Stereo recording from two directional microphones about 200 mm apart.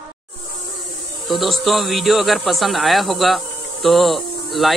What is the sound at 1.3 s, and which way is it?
Speech, centre (ahead or behind).